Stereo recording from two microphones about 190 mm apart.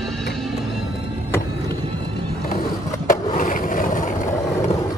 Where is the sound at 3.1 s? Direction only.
45° left (ahead or behind).